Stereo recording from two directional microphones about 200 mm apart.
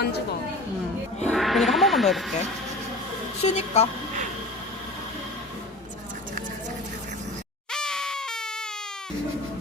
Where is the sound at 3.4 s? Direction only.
30° left (ahead or behind).